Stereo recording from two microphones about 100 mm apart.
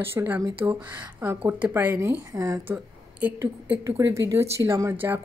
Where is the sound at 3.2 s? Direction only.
20° right (ahead or behind).